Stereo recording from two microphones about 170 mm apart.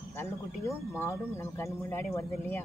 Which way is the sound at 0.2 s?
15° left (ahead or behind).